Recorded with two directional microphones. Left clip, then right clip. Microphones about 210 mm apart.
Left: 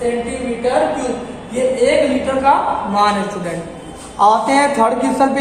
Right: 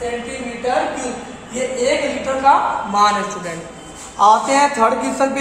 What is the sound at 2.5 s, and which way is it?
Speech, 20° right (ahead or behind).